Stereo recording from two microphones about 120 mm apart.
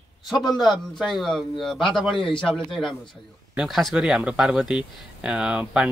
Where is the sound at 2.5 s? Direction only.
5° left (ahead or behind).